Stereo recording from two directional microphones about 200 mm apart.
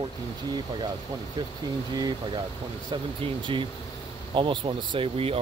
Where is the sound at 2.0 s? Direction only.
20° right (ahead or behind).